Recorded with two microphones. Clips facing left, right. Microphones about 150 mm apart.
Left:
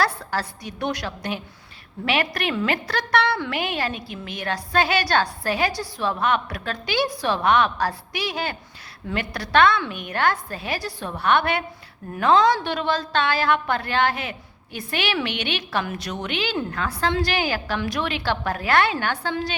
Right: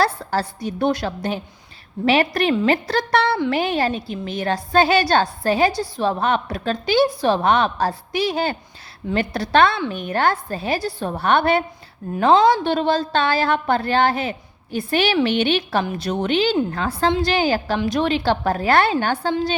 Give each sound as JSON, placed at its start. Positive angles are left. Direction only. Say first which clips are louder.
{"t": 0.0, "sound": "a woman's voice", "louder": "right 4 dB", "side_deg": -25}